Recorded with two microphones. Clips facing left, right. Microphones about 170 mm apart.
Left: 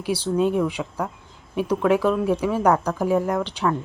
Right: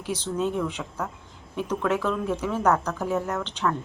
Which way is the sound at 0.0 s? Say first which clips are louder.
Left 6 dB; 10° left (ahead or behind).